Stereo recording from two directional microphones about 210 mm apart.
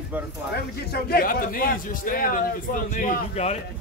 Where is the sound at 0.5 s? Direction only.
50° left (ahead or behind).